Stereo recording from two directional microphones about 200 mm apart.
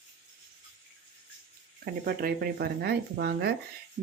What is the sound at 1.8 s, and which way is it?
Speech, 50° right (ahead or behind).